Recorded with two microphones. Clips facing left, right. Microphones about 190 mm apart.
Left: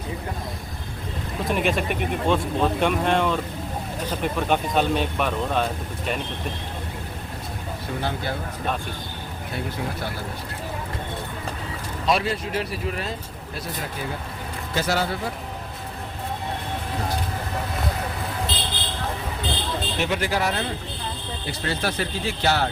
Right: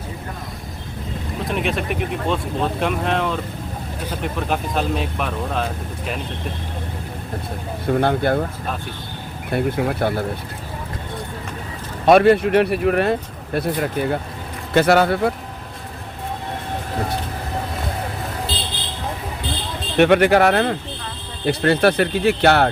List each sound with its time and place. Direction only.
1.5 s speech: centre (ahead or behind)
7.9 s speech: 55° right (ahead or behind)
9.5 s speech: 60° right (ahead or behind)
12.0 s speech: 60° right (ahead or behind)
20.0 s speech: 65° right (ahead or behind)